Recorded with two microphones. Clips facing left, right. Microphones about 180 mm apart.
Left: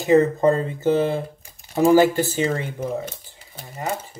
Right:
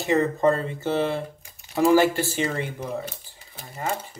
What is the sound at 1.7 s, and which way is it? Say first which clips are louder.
Speech: left 3 dB; 45° left (ahead or behind).